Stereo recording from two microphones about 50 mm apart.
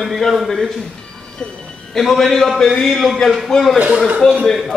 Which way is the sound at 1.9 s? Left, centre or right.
Centre.